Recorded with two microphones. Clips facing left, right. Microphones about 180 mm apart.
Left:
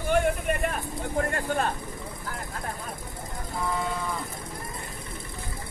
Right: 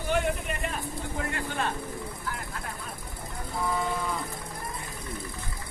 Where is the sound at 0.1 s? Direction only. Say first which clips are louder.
Left 4 dB; 50° left (ahead or behind).